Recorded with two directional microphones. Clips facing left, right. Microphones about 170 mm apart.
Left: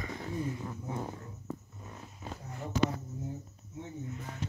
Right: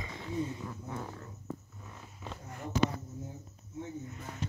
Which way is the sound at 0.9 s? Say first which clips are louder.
Left 4 dB; 20° left (ahead or behind).